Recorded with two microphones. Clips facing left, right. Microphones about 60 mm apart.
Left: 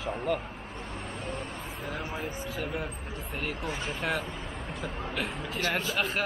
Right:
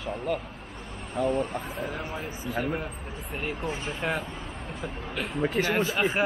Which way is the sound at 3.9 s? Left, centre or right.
Centre.